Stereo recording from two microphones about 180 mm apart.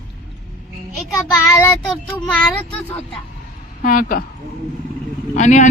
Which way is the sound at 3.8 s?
50° left (ahead or behind).